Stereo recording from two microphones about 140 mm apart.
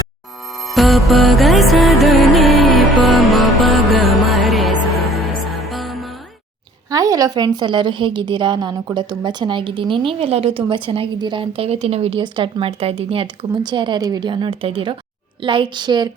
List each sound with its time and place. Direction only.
0.7 s music: centre (ahead or behind)
6.9 s a woman's voice: 25° right (ahead or behind); by 13.2 s 45° right (ahead or behind)
13.7 s a woman's voice: 35° right (ahead or behind)